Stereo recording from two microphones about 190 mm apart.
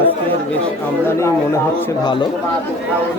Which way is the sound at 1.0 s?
15° left (ahead or behind).